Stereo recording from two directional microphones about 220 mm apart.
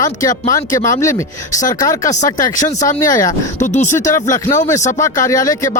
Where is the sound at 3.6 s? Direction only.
35° left (ahead or behind).